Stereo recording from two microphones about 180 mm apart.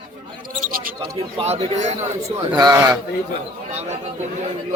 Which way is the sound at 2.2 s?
20° right (ahead or behind).